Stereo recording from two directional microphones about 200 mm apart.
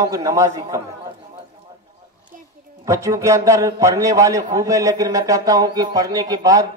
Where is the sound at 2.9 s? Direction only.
15° right (ahead or behind).